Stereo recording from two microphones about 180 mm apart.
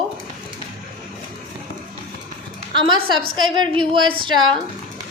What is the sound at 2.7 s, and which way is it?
A woman's voice, 25° right (ahead or behind).